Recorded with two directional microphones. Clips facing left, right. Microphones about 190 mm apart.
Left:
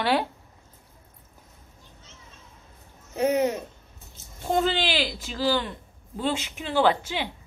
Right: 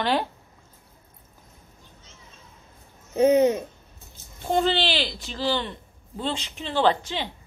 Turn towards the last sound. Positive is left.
turn(degrees=10)  # may be behind; listen again after turning